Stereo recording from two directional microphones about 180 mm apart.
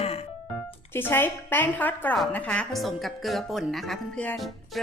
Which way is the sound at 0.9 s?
10° left (ahead or behind).